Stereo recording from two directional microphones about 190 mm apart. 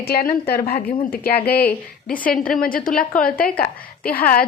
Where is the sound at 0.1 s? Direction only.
55° left (ahead or behind).